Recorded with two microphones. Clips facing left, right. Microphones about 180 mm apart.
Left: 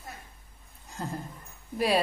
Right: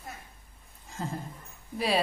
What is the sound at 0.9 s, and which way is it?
A woman's voice, centre (ahead or behind).